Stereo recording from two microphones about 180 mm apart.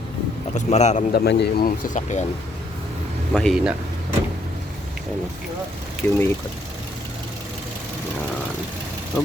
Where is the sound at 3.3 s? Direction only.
Centre (ahead or behind).